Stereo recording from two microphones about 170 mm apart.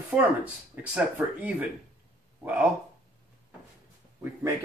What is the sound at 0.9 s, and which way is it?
Speech, 10° right (ahead or behind).